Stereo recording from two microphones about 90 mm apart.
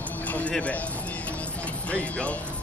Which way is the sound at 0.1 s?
20° left (ahead or behind).